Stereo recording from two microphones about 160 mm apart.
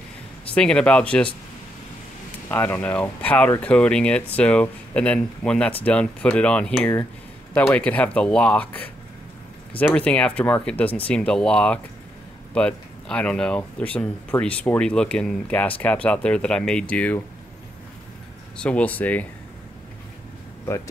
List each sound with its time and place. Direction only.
0.6 s speech: 5° left (ahead or behind)
2.5 s speech: 10° left (ahead or behind)
9.9 s speech: 5° left (ahead or behind)
18.6 s speech: 10° left (ahead or behind)
20.6 s speech: 20° left (ahead or behind)